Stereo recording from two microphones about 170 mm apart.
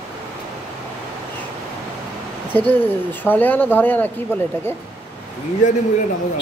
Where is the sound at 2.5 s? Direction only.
10° left (ahead or behind).